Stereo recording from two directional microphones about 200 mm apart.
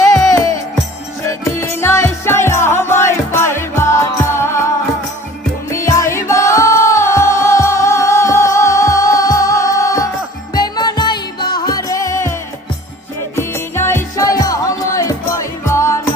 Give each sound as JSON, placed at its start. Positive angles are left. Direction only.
{"t": 0.1, "sound": "music", "side_deg": 15}
{"t": 5.7, "sound": "music", "side_deg": 15}
{"t": 13.3, "sound": "music", "side_deg": 10}